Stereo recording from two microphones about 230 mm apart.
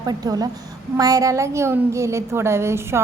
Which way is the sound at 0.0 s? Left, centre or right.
Centre.